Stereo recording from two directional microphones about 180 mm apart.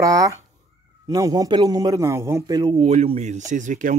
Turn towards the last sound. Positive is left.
turn(degrees=-45)  # may be behind; listen again after turning